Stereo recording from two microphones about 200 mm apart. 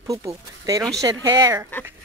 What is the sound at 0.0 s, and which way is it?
Speech, 15° right (ahead or behind).